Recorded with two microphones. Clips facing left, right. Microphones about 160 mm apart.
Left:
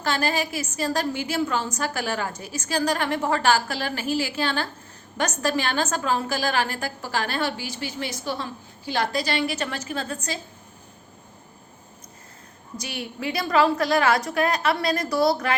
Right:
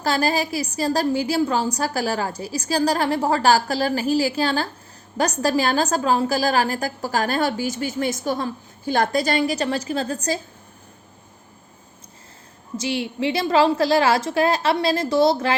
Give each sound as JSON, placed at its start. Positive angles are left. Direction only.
{"t": 0.0, "sound": "a woman's voice", "side_deg": -35}
{"t": 12.8, "sound": "a woman's voice", "side_deg": -25}